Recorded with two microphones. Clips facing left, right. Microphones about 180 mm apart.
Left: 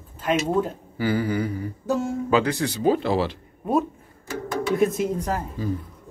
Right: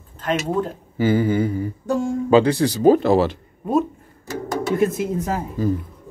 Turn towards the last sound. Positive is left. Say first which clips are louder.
# right 7 dB
turn(degrees=-45)  # may be behind; listen again after turning